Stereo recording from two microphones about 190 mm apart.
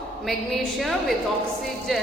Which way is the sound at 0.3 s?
Centre (ahead or behind).